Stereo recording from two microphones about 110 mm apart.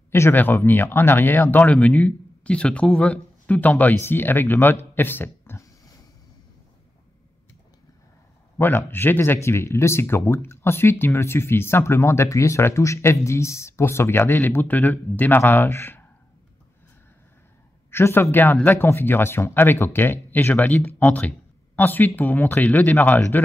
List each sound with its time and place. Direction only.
0.1 s speech: 20° left (ahead or behind)
4.9 s a sound: 20° left (ahead or behind)
8.5 s speech: 20° left (ahead or behind)
17.9 s speech: 25° left (ahead or behind)